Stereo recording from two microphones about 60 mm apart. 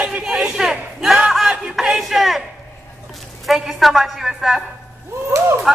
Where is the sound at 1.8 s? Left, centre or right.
Centre.